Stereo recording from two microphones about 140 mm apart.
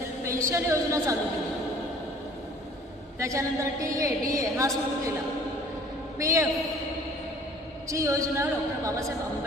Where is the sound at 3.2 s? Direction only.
20° right (ahead or behind).